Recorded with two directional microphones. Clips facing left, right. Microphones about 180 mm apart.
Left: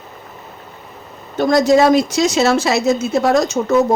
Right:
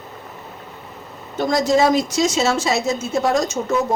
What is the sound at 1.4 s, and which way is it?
Speech, 65° left (ahead or behind).